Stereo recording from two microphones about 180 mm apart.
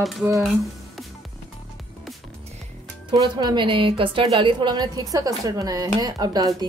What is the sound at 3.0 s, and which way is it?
A woman's voice, 25° right (ahead or behind).